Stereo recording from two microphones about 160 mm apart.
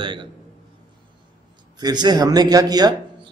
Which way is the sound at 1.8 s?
25° right (ahead or behind).